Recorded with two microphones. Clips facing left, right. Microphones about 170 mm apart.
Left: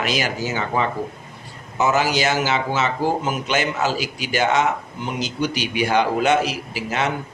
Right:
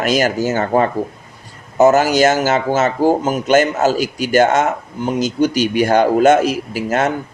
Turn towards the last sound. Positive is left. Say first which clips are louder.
# right 7 dB
turn(degrees=-45)  # may be behind; listen again after turning